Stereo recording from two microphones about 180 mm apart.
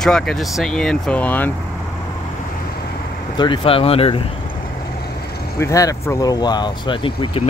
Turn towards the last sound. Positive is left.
turn(degrees=30)  # may be behind; listen again after turning